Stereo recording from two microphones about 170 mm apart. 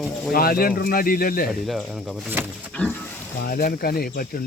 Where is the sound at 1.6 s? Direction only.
Centre (ahead or behind).